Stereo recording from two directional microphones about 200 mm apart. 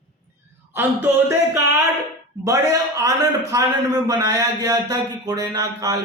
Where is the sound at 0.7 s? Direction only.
10° right (ahead or behind).